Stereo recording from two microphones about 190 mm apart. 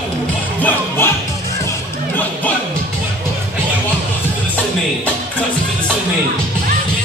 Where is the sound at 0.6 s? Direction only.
10° left (ahead or behind).